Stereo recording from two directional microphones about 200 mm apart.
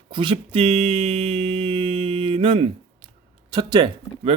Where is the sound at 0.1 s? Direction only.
25° right (ahead or behind).